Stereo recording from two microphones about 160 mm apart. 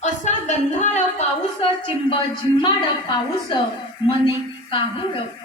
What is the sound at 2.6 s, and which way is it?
A woman's voice, 30° left (ahead or behind).